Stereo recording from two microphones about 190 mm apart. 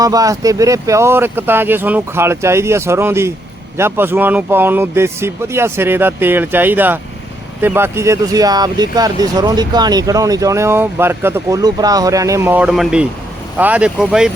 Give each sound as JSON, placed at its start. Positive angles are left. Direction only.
{"t": 0.0, "sound": "speech", "side_deg": -20}